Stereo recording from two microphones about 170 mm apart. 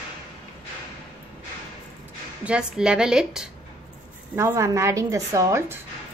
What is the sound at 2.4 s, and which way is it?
A woman's voice, 5° right (ahead or behind).